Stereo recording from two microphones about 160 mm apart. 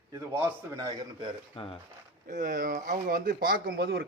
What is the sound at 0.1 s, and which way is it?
A man's voice, 20° right (ahead or behind).